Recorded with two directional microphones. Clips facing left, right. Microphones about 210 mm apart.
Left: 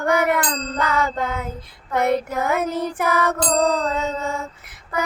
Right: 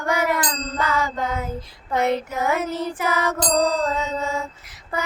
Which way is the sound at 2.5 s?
55° left (ahead or behind).